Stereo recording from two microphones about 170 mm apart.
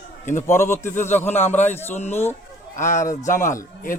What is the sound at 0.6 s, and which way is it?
A man's voice, 15° left (ahead or behind).